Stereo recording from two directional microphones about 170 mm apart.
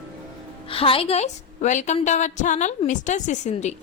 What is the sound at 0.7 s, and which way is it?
A woman's voice, 35° left (ahead or behind).